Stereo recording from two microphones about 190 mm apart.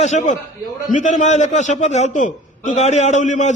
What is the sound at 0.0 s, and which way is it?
A man's voice, 40° left (ahead or behind).